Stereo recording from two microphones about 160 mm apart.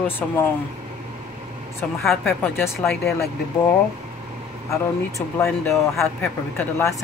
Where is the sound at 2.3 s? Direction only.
15° left (ahead or behind).